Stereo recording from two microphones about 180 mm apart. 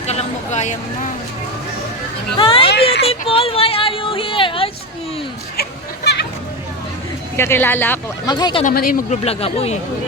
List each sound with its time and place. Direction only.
0.1 s a sound: 40° left (ahead or behind)
2.4 s a sound: 30° left (ahead or behind)
7.3 s speech: 15° left (ahead or behind)
8.3 s speech: 25° left (ahead or behind)
8.6 s speech: 50° left (ahead or behind)
9.2 s speech: 35° left (ahead or behind)